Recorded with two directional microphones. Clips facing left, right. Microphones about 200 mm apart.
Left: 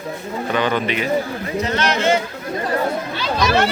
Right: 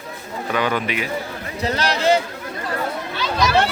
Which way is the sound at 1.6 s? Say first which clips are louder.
Left 1 dB; 35° right (ahead or behind).